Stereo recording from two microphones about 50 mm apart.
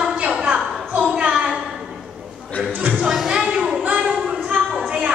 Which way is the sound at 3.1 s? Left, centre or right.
Centre.